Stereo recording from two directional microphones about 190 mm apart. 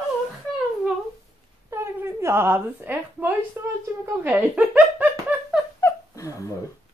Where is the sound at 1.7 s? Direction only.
15° right (ahead or behind).